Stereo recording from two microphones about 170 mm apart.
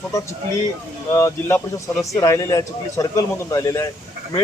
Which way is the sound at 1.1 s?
15° left (ahead or behind).